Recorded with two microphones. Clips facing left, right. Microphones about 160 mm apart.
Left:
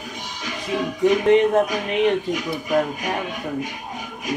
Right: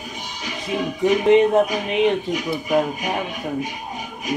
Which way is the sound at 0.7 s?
15° right (ahead or behind).